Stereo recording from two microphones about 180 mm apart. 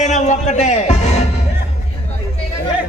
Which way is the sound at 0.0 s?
40° left (ahead or behind).